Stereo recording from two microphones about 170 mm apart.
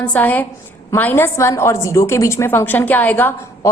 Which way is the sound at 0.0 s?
10° left (ahead or behind).